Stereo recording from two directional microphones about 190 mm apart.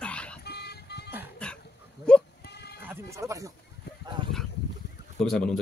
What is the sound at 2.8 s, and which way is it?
Speech, 15° right (ahead or behind).